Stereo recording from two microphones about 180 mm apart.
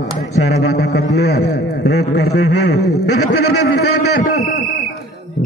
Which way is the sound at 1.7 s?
70° left (ahead or behind).